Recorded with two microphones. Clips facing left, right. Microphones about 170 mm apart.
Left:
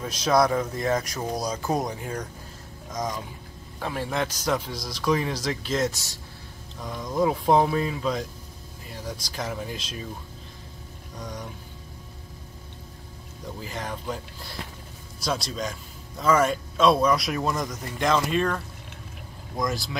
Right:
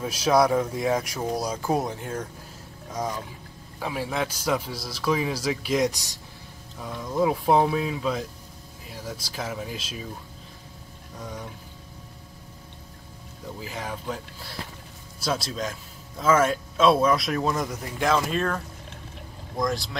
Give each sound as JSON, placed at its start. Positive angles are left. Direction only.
{"t": 0.0, "sound": "a man's voice", "side_deg": -10}
{"t": 11.1, "sound": "speech", "side_deg": -5}
{"t": 13.6, "sound": "a man's voice", "side_deg": -5}